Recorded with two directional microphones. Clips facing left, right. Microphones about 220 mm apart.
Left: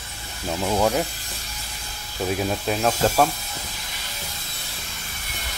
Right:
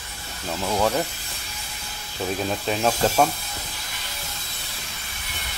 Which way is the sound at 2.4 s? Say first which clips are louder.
Right 1 dB; 5° left (ahead or behind).